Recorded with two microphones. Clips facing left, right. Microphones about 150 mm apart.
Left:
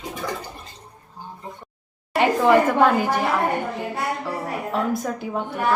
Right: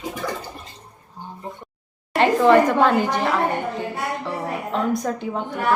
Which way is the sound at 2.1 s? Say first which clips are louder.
Right 2 dB; 10° left (ahead or behind).